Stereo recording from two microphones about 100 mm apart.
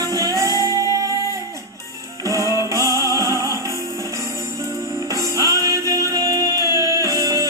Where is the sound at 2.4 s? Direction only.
35° left (ahead or behind).